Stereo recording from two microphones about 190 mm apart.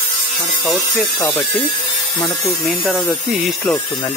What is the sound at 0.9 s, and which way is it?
Speech, 15° left (ahead or behind).